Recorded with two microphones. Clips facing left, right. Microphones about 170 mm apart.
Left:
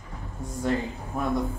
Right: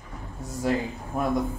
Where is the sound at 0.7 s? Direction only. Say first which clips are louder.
Right 1 dB; 5° right (ahead or behind).